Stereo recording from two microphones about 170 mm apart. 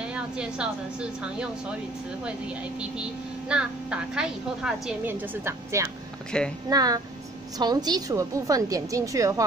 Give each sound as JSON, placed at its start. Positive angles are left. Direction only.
{"t": 0.1, "sound": "a woman's voice", "side_deg": -5}
{"t": 3.4, "sound": "a woman's voice", "side_deg": -5}
{"t": 6.3, "sound": "speech", "side_deg": 5}
{"t": 6.7, "sound": "a woman's voice", "side_deg": -20}